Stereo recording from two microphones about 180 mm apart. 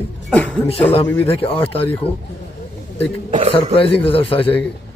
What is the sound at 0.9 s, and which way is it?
Speech, 30° left (ahead or behind).